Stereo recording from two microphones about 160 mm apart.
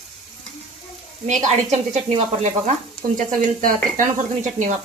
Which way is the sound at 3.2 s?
60° right (ahead or behind).